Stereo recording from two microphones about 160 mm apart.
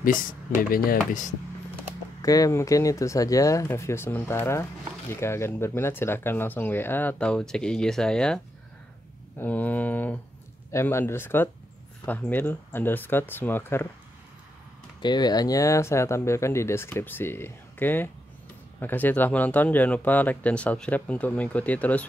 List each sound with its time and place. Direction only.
0.0 s speech: 60° left (ahead or behind)
2.2 s speech: 20° left (ahead or behind); by 8.4 s 5° left (ahead or behind)
9.4 s speech: 10° left (ahead or behind)
15.0 s speech: 25° left (ahead or behind); by 22.0 s 10° left (ahead or behind)